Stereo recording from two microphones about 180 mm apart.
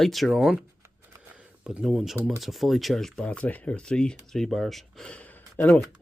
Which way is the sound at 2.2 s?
Centre (ahead or behind).